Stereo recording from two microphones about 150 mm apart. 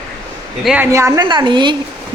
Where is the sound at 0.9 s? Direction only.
20° right (ahead or behind).